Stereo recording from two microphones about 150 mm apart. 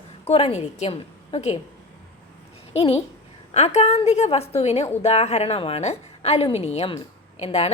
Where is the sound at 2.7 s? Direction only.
45° left (ahead or behind).